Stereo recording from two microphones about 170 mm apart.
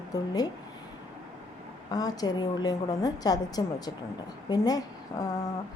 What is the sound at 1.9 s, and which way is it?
A woman's voice, 20° left (ahead or behind).